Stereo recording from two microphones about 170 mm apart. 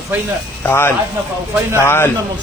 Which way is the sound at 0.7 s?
15° left (ahead or behind).